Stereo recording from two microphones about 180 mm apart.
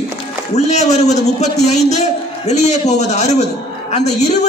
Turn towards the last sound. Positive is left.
turn(degrees=40)  # may be behind; listen again after turning